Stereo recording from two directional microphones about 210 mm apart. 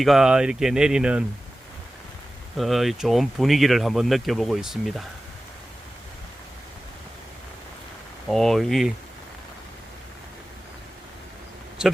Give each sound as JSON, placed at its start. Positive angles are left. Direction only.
{"t": 0.0, "sound": "speech", "side_deg": 0}
{"t": 2.6, "sound": "speech", "side_deg": 0}
{"t": 8.3, "sound": "speech", "side_deg": 0}